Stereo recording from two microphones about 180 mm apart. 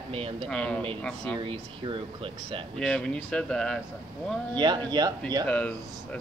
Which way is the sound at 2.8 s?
5° left (ahead or behind).